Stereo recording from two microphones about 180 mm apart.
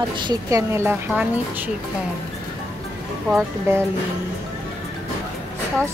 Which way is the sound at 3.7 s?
15° right (ahead or behind).